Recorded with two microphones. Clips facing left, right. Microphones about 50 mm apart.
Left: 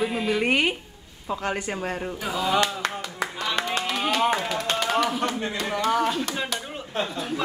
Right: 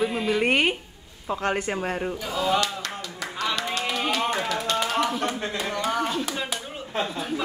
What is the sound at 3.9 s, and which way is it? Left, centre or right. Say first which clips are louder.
Speech: left 3 dB; centre.